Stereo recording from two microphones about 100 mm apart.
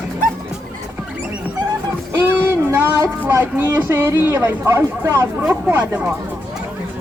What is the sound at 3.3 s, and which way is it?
Speech, 20° right (ahead or behind).